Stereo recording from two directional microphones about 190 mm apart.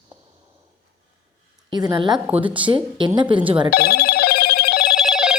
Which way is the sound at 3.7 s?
55° left (ahead or behind).